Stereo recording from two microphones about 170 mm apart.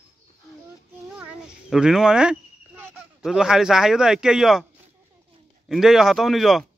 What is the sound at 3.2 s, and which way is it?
A man's voice, 5° right (ahead or behind).